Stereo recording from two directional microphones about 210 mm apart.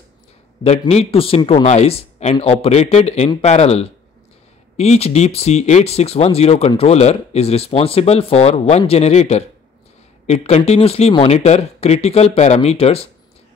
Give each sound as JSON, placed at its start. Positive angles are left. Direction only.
{"t": 0.7, "sound": "speech", "side_deg": 30}